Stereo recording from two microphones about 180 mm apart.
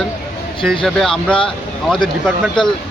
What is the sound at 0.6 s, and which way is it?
Speech, centre (ahead or behind).